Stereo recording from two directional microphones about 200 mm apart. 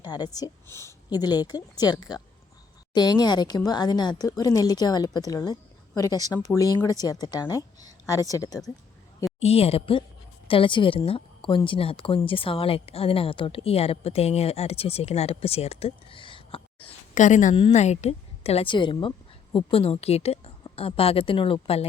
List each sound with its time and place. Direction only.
0.0 s a woman's voice: 20° left (ahead or behind)
9.4 s a woman's voice: 30° left (ahead or behind)